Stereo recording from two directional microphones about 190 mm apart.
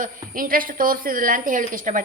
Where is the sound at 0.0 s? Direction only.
45° right (ahead or behind).